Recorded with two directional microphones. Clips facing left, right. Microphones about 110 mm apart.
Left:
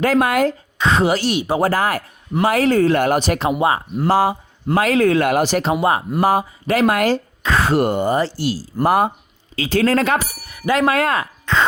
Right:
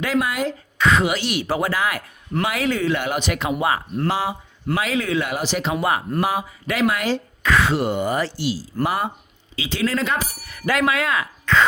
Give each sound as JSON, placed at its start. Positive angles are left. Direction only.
{"t": 0.0, "sound": "speech", "side_deg": 50}
{"t": 0.8, "sound": "speech", "side_deg": 30}
{"t": 4.1, "sound": "speech", "side_deg": 45}
{"t": 5.8, "sound": "speech", "side_deg": 25}
{"t": 6.1, "sound": "speech", "side_deg": 40}
{"t": 7.4, "sound": "speech", "side_deg": 35}
{"t": 7.7, "sound": "speech", "side_deg": 50}
{"t": 8.0, "sound": "speech", "side_deg": 30}
{"t": 8.4, "sound": "speech", "side_deg": 45}
{"t": 10.8, "sound": "speech", "side_deg": 45}
{"t": 11.5, "sound": "a sound", "side_deg": 20}